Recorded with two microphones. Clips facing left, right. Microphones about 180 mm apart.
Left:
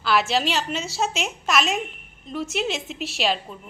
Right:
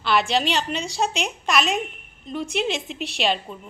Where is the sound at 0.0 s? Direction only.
Centre (ahead or behind).